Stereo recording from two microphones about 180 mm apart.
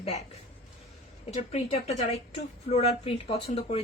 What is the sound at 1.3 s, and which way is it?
Speech, 35° left (ahead or behind).